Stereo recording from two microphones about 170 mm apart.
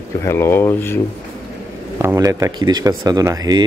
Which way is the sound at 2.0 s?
20° right (ahead or behind).